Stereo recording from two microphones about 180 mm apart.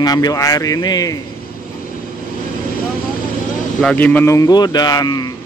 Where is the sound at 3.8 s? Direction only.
5° left (ahead or behind); by 5.3 s 20° left (ahead or behind).